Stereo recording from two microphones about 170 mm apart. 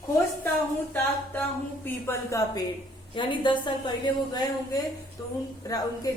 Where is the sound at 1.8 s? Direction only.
15° left (ahead or behind).